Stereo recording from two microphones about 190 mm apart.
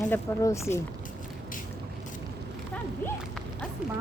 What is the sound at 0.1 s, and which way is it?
Speech, 15° left (ahead or behind).